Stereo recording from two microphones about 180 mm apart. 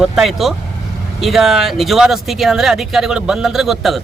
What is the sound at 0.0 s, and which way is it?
Speech, centre (ahead or behind).